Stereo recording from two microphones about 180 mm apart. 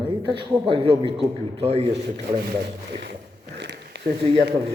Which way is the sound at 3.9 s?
70° right (ahead or behind).